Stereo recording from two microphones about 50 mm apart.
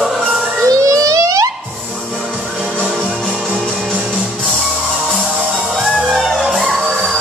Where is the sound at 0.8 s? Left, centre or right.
Right.